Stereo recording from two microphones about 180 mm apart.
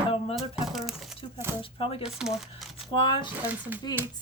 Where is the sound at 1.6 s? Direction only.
30° left (ahead or behind).